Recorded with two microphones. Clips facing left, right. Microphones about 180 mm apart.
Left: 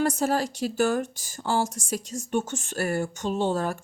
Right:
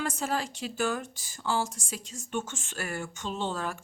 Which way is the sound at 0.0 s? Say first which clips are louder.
Left 7 dB; 40° left (ahead or behind).